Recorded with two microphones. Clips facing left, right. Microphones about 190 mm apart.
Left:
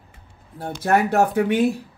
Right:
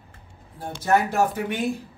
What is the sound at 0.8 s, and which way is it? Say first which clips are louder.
Speech: left 3 dB; 60° left (ahead or behind).